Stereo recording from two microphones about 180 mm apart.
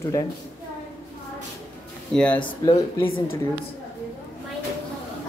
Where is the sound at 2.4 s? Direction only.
30° left (ahead or behind).